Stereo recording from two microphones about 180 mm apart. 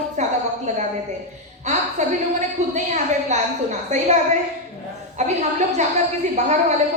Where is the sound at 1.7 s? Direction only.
40° right (ahead or behind).